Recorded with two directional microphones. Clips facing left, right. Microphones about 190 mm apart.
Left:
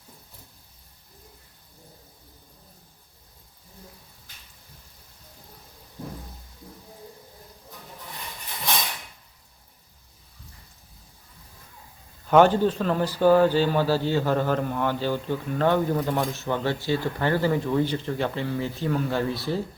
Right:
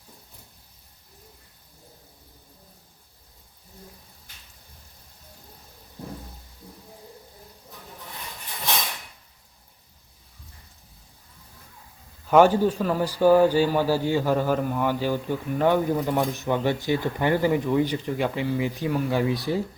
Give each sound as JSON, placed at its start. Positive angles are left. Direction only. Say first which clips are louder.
{"t": 12.3, "sound": "speech", "louder": "even", "side_deg": -10}